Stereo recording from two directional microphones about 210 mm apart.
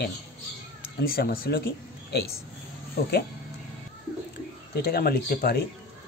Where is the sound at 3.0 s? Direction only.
50° left (ahead or behind).